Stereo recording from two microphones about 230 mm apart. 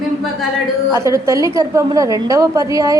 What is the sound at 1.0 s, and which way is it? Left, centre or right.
A woman's voice, centre.